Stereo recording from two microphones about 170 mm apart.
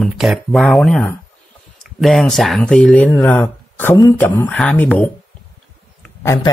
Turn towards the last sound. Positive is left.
turn(degrees=20)  # may be behind; listen again after turning